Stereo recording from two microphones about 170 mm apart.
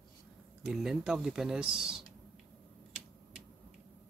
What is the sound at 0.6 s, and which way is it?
Speech, centre (ahead or behind).